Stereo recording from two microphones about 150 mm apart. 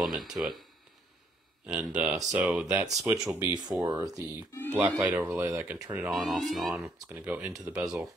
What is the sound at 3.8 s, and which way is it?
Speech, 25° right (ahead or behind).